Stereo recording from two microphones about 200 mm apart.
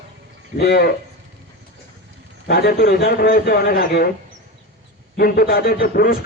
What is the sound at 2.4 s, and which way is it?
A man's voice, 50° left (ahead or behind).